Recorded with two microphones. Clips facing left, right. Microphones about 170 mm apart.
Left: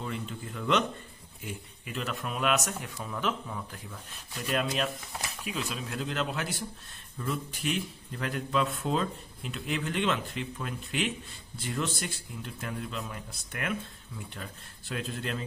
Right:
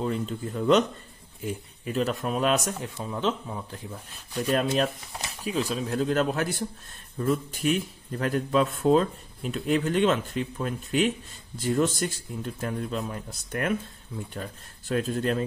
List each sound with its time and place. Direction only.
0.0 s speech: 35° right (ahead or behind)
5.4 s speech: 35° right (ahead or behind)